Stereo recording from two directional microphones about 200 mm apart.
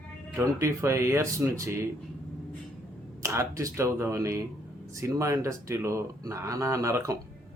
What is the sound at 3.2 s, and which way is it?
Speech, 15° right (ahead or behind).